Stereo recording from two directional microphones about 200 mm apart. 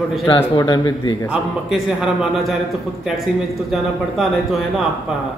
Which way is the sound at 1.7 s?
Centre (ahead or behind).